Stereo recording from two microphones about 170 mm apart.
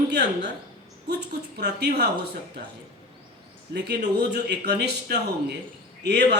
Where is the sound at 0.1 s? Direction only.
90° right.